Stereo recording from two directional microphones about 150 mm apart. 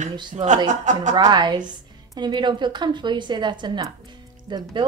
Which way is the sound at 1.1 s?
30° right (ahead or behind).